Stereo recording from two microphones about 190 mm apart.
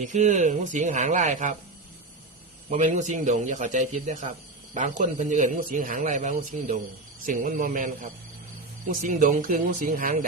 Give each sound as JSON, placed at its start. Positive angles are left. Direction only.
{"t": 0.0, "sound": "a man's voice", "side_deg": -40}
{"t": 2.6, "sound": "a man's voice", "side_deg": -40}